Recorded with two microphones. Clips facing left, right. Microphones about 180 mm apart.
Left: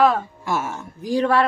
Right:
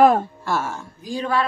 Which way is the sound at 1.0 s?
70° left (ahead or behind).